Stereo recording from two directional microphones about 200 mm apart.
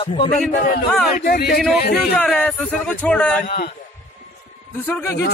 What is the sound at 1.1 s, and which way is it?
Speech, 50° left (ahead or behind).